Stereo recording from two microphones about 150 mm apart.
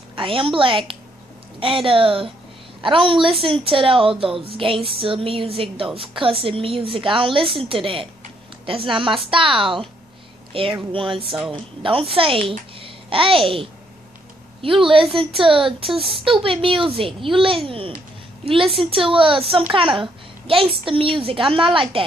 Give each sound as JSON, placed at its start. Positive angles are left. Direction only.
{"t": 0.1, "sound": "a woman's voice", "side_deg": -35}